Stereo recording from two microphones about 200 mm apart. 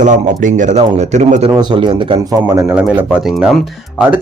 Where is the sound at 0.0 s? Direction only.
40° right (ahead or behind); by 2.1 s 25° right (ahead or behind).